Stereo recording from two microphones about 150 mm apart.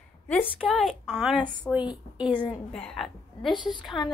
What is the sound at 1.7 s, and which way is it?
A woman's voice, 15° left (ahead or behind).